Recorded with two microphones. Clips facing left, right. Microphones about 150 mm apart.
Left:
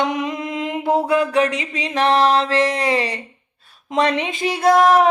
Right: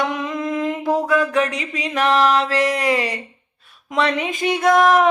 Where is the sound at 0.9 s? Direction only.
30° left (ahead or behind).